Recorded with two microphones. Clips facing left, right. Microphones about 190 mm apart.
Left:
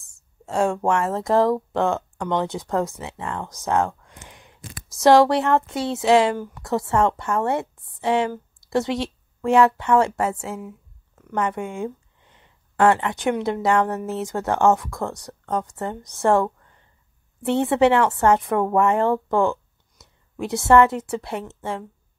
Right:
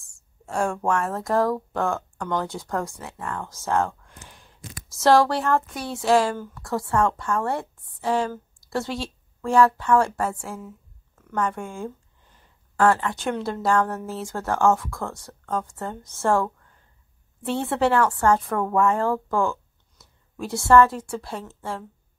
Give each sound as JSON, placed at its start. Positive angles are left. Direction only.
{"t": 0.5, "sound": "a woman's voice", "side_deg": 20}